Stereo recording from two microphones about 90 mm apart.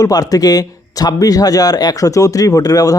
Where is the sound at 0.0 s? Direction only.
45° left (ahead or behind).